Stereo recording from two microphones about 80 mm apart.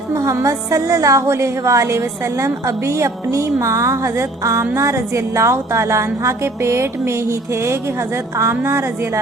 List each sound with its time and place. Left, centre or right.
0.1 s a woman's voice: right